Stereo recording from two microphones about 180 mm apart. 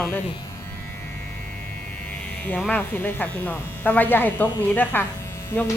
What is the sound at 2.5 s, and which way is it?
Speech, 5° left (ahead or behind).